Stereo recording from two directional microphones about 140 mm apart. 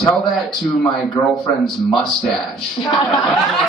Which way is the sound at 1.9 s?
Centre (ahead or behind).